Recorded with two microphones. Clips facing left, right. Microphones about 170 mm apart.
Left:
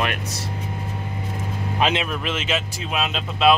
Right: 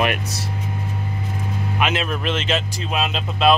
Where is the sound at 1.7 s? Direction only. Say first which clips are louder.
Left 1 dB; 30° left (ahead or behind).